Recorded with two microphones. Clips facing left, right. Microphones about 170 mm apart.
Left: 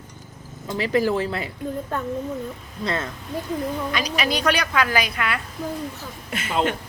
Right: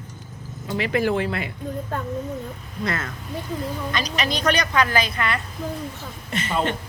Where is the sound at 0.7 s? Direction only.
35° left (ahead or behind).